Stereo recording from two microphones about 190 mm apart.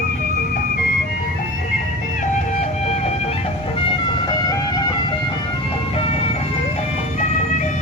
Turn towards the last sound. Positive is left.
turn(degrees=40)  # may be behind; listen again after turning